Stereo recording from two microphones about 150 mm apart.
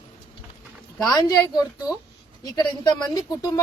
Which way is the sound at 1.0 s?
25° left (ahead or behind).